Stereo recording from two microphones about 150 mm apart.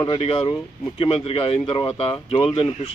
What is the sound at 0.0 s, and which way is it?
Speech, 35° left (ahead or behind).